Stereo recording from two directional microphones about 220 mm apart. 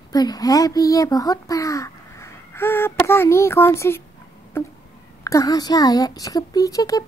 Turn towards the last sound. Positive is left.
turn(degrees=15)  # may be behind; listen again after turning